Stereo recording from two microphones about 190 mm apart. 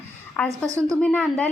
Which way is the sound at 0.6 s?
15° right (ahead or behind).